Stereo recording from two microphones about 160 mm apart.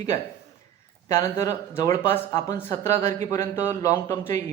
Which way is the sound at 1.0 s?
20° left (ahead or behind).